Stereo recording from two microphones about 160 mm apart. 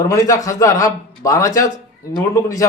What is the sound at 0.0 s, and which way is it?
A man's voice, 20° left (ahead or behind).